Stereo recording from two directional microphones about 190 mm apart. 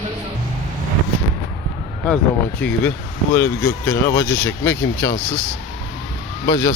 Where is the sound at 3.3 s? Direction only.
10° left (ahead or behind).